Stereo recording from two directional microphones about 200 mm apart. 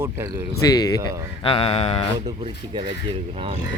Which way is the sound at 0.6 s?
20° left (ahead or behind).